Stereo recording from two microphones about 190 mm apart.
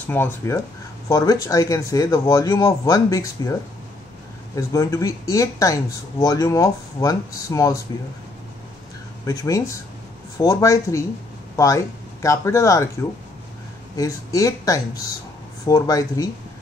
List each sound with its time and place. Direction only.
0.0 s speech: 10° left (ahead or behind)
4.6 s speech: 15° left (ahead or behind)
9.2 s speech: 20° left (ahead or behind)
13.9 s speech: 15° left (ahead or behind)